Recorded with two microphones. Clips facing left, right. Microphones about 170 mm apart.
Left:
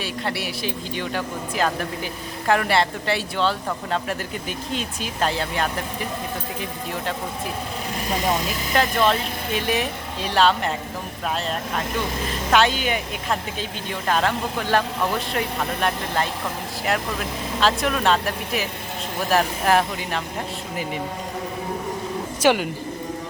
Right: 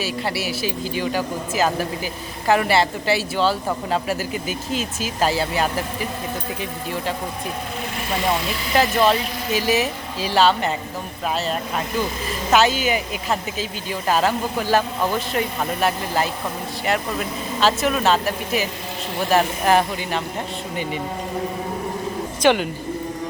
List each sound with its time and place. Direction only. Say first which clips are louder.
0.0 s speech: right 3 dB; 5° right (ahead or behind)
8.7 s speech: right 3 dB; 5° right (ahead or behind)
12.5 s speech: right 2 dB; 5° right (ahead or behind)
22.4 s speech: right 1 dB; 5° left (ahead or behind)